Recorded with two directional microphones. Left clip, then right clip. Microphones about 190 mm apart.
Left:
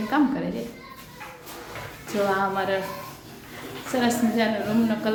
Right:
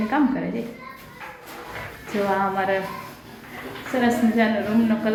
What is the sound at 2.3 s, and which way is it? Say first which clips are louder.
Speech: right 4 dB; 10° left (ahead or behind).